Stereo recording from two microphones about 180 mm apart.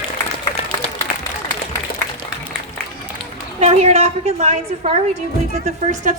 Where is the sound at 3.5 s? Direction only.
35° right (ahead or behind).